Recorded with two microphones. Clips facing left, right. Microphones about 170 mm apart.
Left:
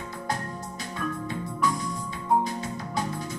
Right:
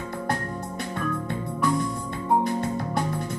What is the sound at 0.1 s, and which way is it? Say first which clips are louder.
Music: right 3 dB; 60° right (ahead or behind).